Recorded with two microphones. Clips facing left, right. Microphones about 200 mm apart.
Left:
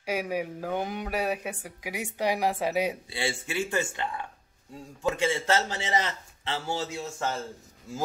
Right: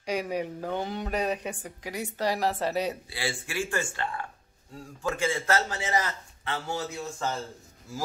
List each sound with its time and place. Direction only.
0.0 s speech: 10° left (ahead or behind)
3.1 s a man's voice: 25° left (ahead or behind)